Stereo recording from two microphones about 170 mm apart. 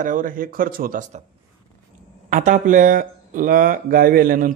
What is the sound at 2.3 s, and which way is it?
Speech, 45° right (ahead or behind).